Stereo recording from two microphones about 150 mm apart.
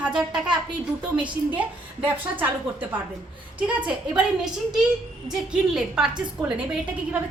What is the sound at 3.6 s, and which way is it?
Speech, 10° right (ahead or behind).